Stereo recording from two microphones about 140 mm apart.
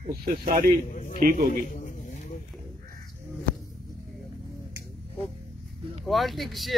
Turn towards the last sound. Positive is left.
turn(degrees=0)  # may be behind; listen again after turning